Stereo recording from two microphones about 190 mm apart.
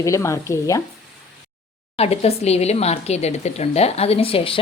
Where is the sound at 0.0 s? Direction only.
15° left (ahead or behind).